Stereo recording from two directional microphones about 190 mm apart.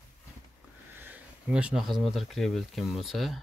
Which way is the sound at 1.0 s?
10° right (ahead or behind).